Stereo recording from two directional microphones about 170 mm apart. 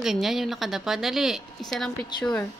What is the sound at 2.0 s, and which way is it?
Speech, 25° left (ahead or behind).